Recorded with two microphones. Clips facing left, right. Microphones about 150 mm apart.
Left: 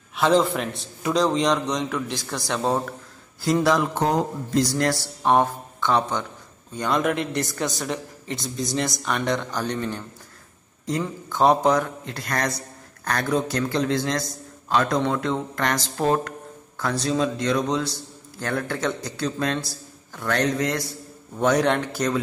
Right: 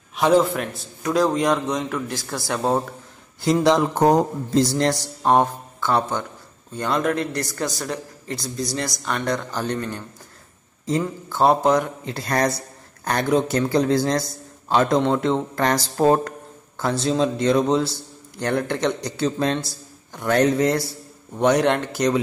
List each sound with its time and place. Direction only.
0.1 s a sound: 15° right (ahead or behind)
0.4 s a man's voice: centre (ahead or behind)
3.6 s a man's voice: 25° right (ahead or behind)
3.9 s speech: 45° right (ahead or behind)
4.7 s a man's voice: 20° right (ahead or behind)
12.1 s a man's voice: 30° right (ahead or behind)
18.4 s a man's voice: 20° right (ahead or behind)
21.4 s speech: 10° right (ahead or behind)